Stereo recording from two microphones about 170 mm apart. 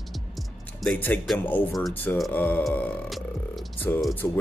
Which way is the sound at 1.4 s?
10° left (ahead or behind).